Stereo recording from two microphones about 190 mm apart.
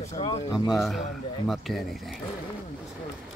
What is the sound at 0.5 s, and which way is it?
Speech, centre (ahead or behind).